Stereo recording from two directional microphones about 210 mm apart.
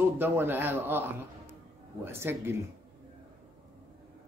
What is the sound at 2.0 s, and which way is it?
Speech, 10° right (ahead or behind).